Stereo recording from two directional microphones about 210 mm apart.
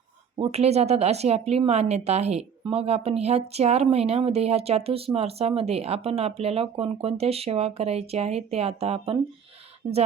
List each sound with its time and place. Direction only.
0.3 s speech: 25° right (ahead or behind)